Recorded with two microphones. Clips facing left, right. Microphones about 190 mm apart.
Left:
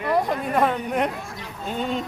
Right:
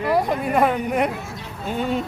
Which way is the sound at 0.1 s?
5° right (ahead or behind).